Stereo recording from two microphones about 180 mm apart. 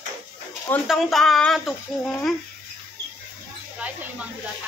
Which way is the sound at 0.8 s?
Centre (ahead or behind).